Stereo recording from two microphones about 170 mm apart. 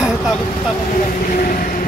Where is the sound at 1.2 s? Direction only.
50° left (ahead or behind).